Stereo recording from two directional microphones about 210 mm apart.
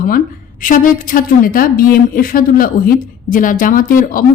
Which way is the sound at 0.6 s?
40° left (ahead or behind).